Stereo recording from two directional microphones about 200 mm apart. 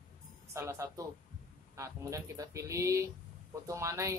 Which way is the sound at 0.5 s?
15° right (ahead or behind).